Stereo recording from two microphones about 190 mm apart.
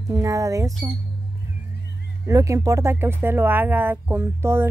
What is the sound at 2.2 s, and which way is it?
Speech, 15° right (ahead or behind).